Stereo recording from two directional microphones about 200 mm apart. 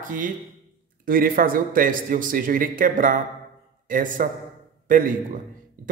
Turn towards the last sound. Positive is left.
turn(degrees=-45)  # may be behind; listen again after turning